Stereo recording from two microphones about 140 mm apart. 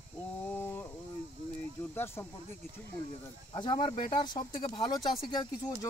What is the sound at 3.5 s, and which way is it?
Speech, 35° left (ahead or behind).